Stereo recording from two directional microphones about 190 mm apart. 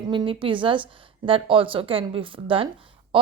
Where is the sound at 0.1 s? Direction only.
25° right (ahead or behind).